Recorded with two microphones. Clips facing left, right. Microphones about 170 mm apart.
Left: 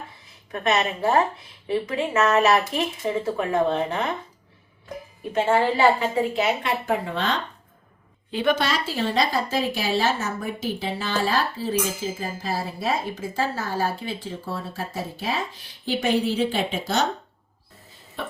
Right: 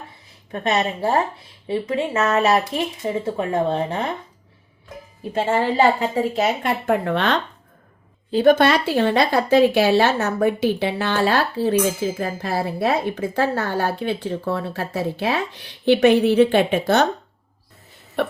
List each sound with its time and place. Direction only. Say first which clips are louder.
0.5 s speech: right 2 dB; 30° right (ahead or behind)
5.3 s speech: even; 40° right (ahead or behind); by 7.4 s 65° right (ahead or behind)
8.3 s speech: right 8 dB; 40° right (ahead or behind); by 17.1 s 60° right (ahead or behind)